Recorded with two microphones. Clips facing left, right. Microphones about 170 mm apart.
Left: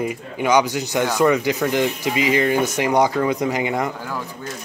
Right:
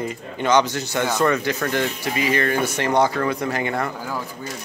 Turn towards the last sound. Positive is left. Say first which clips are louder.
# left 2 dB
turn(degrees=15)  # may be behind; listen again after turning